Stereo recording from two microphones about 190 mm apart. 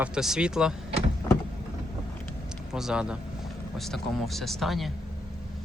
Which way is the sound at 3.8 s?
Centre (ahead or behind).